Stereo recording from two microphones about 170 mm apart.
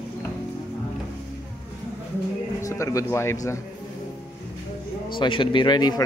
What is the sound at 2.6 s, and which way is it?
Speech, 20° left (ahead or behind).